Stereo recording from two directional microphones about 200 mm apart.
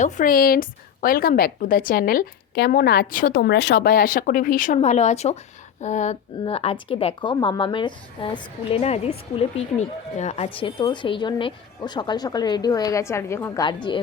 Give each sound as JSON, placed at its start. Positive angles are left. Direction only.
{"t": 0.0, "sound": "a woman's voice", "side_deg": 40}
{"t": 5.8, "sound": "a sound", "side_deg": 35}
{"t": 6.4, "sound": "a woman's voice", "side_deg": 30}
{"t": 10.2, "sound": "a woman's voice", "side_deg": 35}